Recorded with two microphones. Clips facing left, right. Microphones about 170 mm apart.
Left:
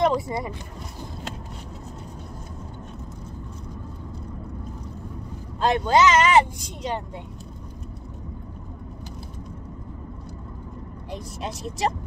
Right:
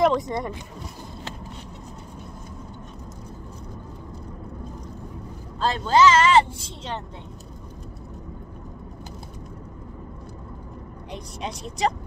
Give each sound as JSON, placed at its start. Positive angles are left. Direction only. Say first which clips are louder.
{"t": 0.1, "sound": "speech", "louder": "right 1 dB", "side_deg": 5}
{"t": 5.7, "sound": "speech", "louder": "even", "side_deg": 20}
{"t": 11.1, "sound": "speech", "louder": "left 1 dB", "side_deg": 0}